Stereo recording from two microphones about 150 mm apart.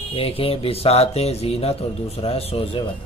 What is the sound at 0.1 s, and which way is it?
Speech, 40° left (ahead or behind).